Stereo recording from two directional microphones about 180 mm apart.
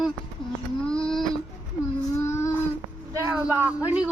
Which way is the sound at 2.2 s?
15° left (ahead or behind).